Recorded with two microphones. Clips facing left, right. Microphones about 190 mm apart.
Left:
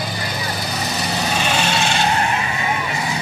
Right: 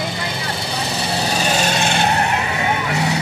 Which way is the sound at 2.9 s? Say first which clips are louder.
Right 4 dB; 70° right (ahead or behind).